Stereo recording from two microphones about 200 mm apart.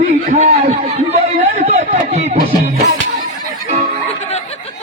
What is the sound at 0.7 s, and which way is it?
Chatter, 30° right (ahead or behind).